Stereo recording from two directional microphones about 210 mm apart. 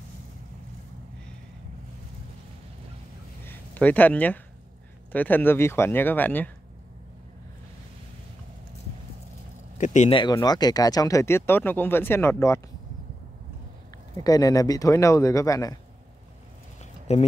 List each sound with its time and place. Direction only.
3.4 s a sound: 10° left (ahead or behind)
5.1 s speech: 10° left (ahead or behind)
9.8 s speech: 35° left (ahead or behind)
10.1 s speech: 20° left (ahead or behind)
14.2 s speech: 15° left (ahead or behind)
17.1 s speech: 30° left (ahead or behind)